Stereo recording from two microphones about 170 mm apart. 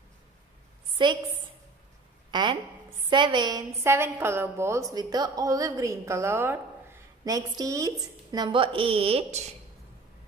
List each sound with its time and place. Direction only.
1.0 s a woman's voice: 25° right (ahead or behind)
2.3 s a woman's voice: 25° right (ahead or behind)